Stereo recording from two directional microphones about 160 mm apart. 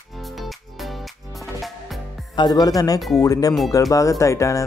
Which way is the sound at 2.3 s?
25° left (ahead or behind).